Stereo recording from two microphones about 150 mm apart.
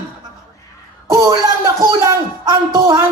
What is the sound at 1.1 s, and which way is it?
Speech, 25° right (ahead or behind).